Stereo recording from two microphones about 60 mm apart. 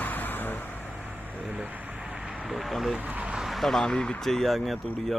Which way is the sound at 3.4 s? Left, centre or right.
Centre.